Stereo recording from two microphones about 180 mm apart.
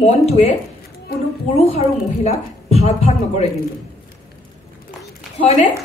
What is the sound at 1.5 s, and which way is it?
Speech, 35° left (ahead or behind).